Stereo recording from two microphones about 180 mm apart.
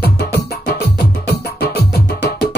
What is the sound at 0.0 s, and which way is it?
Music, 60° left (ahead or behind).